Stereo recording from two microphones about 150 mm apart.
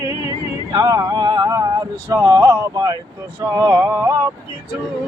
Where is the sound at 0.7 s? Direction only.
25° right (ahead or behind).